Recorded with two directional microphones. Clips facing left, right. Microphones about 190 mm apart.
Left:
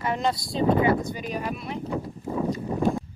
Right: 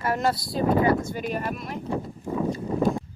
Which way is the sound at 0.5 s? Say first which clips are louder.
Left 1 dB; 20° left (ahead or behind).